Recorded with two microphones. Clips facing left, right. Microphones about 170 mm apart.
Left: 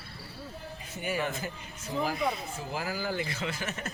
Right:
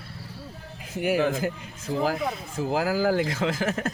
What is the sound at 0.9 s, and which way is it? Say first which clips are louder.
Speech: right 9 dB; 90° right.